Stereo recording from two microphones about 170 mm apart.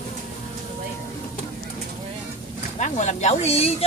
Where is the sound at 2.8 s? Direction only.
45° left (ahead or behind).